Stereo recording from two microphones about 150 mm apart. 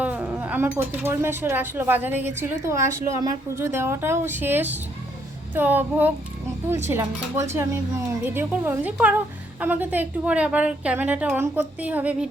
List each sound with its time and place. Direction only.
0.0 s speech: 10° right (ahead or behind)